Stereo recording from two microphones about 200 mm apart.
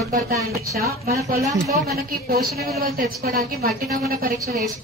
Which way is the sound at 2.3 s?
50° right (ahead or behind).